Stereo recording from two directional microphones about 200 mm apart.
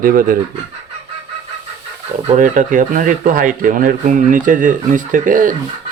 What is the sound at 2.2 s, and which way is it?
Speech, 40° right (ahead or behind).